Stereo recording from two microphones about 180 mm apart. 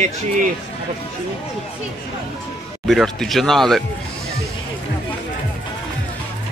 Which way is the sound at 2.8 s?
Centre (ahead or behind).